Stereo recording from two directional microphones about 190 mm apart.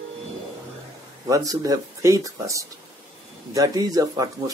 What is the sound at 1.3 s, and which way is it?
Speech, 20° right (ahead or behind).